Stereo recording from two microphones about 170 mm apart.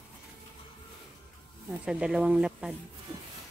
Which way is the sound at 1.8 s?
5° right (ahead or behind).